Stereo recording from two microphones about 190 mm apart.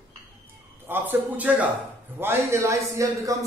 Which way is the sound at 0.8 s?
10° right (ahead or behind).